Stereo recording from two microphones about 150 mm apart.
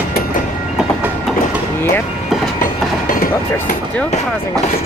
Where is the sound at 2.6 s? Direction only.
70° left (ahead or behind).